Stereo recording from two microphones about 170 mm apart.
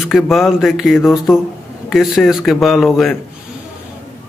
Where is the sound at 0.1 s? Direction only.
Centre (ahead or behind).